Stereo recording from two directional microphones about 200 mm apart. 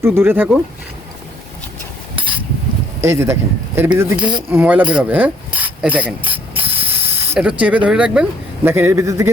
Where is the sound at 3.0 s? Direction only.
15° right (ahead or behind).